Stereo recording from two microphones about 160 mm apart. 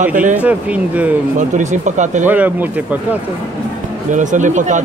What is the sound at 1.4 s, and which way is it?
Speech, 50° right (ahead or behind).